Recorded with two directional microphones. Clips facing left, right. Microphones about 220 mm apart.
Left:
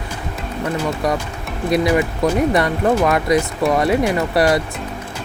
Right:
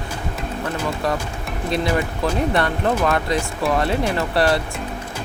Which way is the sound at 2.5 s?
15° left (ahead or behind).